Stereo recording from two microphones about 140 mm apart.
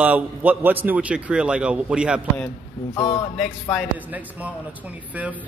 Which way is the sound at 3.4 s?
Centre (ahead or behind).